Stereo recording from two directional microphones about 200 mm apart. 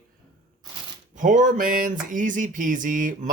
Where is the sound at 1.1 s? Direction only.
40° right (ahead or behind).